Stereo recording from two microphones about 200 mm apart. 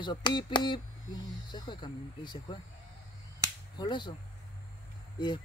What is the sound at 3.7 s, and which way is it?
Speech, 20° left (ahead or behind).